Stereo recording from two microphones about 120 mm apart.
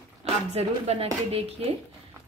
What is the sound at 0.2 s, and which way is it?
A woman's voice, 60° right (ahead or behind).